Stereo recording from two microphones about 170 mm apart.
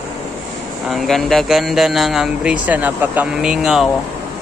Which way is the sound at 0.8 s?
Centre (ahead or behind).